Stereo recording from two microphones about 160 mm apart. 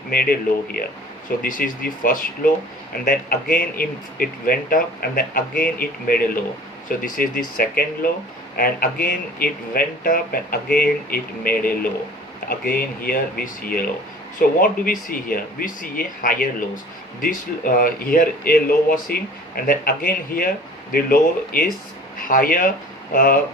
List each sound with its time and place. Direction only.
0.1 s speech: 70° left (ahead or behind)